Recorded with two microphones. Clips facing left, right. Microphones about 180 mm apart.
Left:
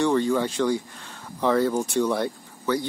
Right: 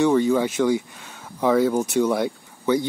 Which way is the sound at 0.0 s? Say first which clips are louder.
Right 3 dB; 5° right (ahead or behind).